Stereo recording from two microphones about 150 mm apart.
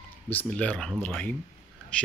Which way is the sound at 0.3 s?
10° left (ahead or behind).